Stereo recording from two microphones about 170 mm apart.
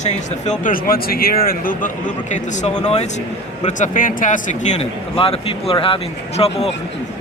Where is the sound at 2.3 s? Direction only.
45° left (ahead or behind).